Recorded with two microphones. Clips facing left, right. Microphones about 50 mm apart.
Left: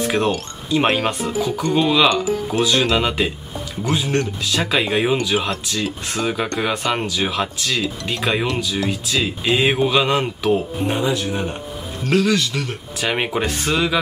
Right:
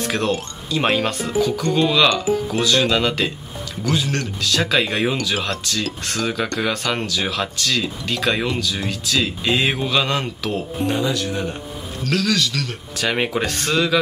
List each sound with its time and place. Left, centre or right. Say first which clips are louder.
0.0 s music: left 3 dB; centre
0.3 s speech: left 1 dB; left
0.8 s a man's voice: right 3 dB; centre; by 12.7 s left
13.0 s speech: even; centre